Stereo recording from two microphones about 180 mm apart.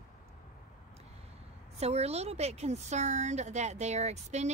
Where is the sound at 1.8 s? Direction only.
35° right (ahead or behind).